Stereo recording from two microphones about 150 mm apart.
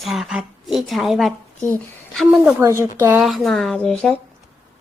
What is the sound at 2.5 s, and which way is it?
Speech, 15° right (ahead or behind).